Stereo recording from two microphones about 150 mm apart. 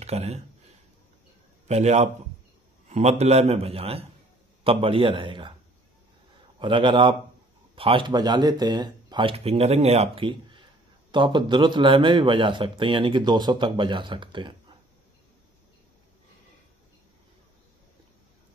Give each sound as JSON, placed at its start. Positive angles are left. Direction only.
{"t": 0.0, "sound": "speech", "side_deg": -45}
{"t": 1.7, "sound": "a man's voice", "side_deg": -45}
{"t": 6.6, "sound": "speech", "side_deg": -35}